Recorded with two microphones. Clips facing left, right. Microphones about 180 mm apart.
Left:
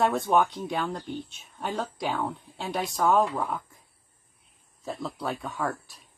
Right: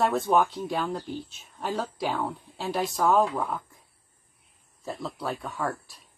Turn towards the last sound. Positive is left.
turn(degrees=0)  # may be behind; listen again after turning